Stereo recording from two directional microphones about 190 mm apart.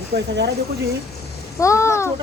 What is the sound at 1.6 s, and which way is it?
Speech, 15° left (ahead or behind).